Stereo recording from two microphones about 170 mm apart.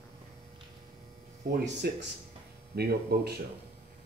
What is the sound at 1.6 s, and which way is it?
Speech, 90° right.